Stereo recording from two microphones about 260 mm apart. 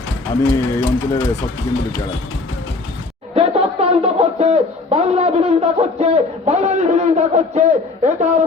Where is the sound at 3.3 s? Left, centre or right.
Right.